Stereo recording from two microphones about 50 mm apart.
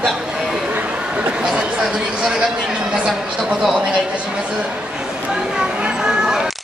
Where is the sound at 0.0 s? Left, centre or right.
Centre.